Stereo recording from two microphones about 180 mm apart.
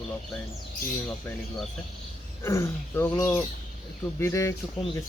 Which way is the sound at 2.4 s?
15° left (ahead or behind).